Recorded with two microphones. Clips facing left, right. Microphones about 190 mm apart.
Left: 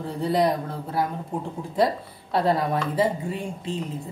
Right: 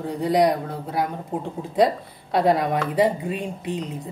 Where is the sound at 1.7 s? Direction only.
15° right (ahead or behind).